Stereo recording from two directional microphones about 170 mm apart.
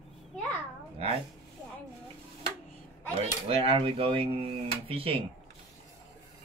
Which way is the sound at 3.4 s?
35° right (ahead or behind).